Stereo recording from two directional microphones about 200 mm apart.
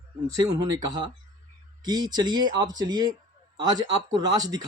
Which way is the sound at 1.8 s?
20° right (ahead or behind).